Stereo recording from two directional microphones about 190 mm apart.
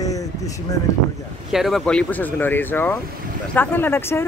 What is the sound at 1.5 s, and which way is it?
Speech, centre (ahead or behind).